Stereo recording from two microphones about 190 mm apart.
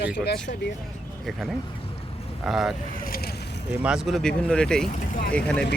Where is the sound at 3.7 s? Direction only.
5° right (ahead or behind).